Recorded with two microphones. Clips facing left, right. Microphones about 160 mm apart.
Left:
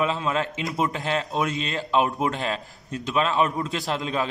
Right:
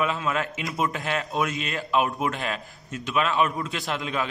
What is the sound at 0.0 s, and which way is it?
A man's voice, 30° left (ahead or behind).